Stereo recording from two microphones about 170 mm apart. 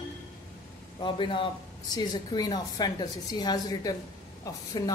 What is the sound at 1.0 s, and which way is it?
A woman's voice, 30° left (ahead or behind).